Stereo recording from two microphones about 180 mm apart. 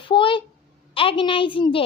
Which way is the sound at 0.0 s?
30° left (ahead or behind).